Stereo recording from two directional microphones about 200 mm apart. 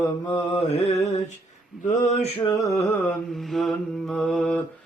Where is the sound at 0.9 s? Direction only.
30° left (ahead or behind).